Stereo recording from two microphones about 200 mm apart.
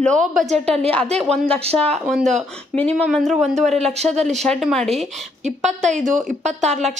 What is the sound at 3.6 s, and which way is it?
Speech, 35° right (ahead or behind).